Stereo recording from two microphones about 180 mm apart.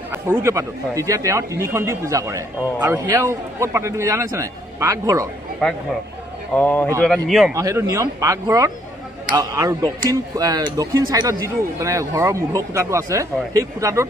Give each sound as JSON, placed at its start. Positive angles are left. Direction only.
{"t": 0.1, "sound": "speech", "side_deg": -15}
{"t": 5.6, "sound": "a man's voice", "side_deg": 5}
{"t": 7.5, "sound": "speech", "side_deg": -15}